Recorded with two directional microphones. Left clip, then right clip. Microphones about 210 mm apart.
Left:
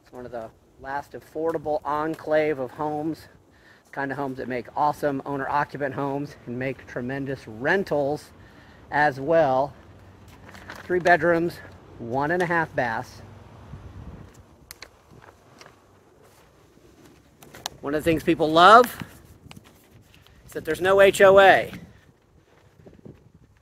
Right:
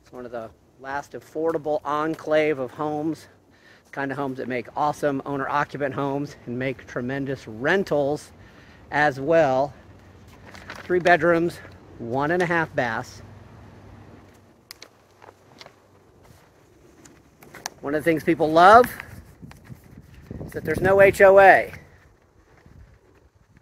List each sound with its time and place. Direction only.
0.1 s speech: 10° right (ahead or behind)
18.0 s speech: 15° left (ahead or behind)
20.6 s speech: 15° left (ahead or behind)